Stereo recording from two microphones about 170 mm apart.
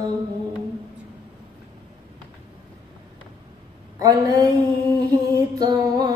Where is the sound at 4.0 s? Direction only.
20° right (ahead or behind).